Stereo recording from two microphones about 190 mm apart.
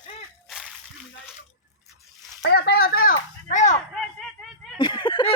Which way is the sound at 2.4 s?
60° left (ahead or behind).